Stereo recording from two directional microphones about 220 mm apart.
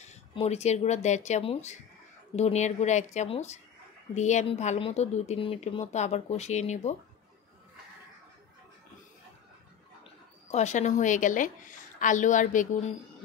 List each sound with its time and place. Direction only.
0.0 s speech: 30° left (ahead or behind)
10.5 s speech: 30° left (ahead or behind)